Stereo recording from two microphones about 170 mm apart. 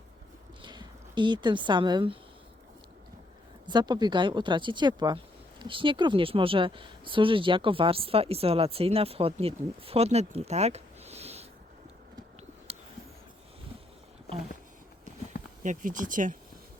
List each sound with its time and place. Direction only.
0.6 s speech: 25° right (ahead or behind)
3.7 s speech: 25° right (ahead or behind)
15.6 s speech: 50° right (ahead or behind)